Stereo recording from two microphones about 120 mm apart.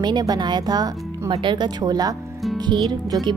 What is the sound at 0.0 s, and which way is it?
Speech, 35° right (ahead or behind).